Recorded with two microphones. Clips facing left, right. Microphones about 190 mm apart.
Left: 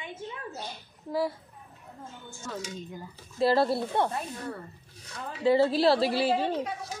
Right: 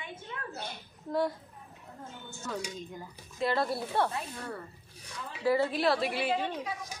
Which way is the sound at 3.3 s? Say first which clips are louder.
Left 6 dB; 30° left (ahead or behind).